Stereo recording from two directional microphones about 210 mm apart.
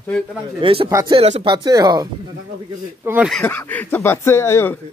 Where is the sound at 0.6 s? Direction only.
25° right (ahead or behind).